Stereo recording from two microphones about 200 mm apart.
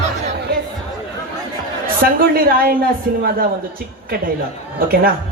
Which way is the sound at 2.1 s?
50° right (ahead or behind).